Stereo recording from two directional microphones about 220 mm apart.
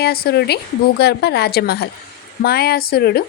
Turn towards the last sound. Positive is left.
turn(degrees=45)  # may be behind; listen again after turning